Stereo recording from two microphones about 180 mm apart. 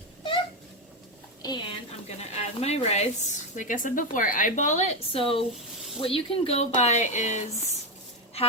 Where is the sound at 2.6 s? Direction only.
35° left (ahead or behind).